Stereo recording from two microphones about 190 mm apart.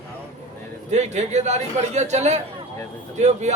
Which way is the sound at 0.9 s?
35° right (ahead or behind).